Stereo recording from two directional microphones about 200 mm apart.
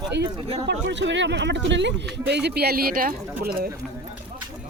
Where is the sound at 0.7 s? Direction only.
65° right (ahead or behind); by 3.7 s 45° right (ahead or behind).